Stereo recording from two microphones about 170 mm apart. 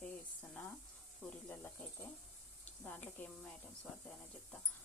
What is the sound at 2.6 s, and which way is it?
Speech, 10° left (ahead or behind).